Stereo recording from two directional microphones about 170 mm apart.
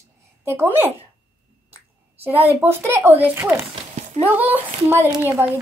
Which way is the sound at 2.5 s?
15° right (ahead or behind).